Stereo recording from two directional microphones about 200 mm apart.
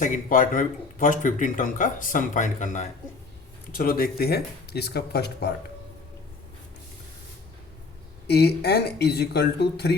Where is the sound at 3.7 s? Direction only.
45° left (ahead or behind).